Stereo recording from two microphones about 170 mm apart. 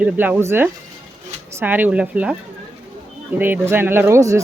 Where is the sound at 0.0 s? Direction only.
10° right (ahead or behind).